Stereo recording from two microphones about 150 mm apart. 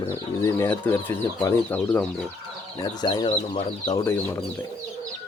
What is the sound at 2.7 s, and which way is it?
Speech, 30° left (ahead or behind).